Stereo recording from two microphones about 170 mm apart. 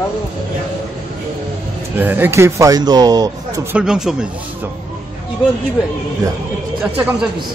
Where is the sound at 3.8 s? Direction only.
5° right (ahead or behind).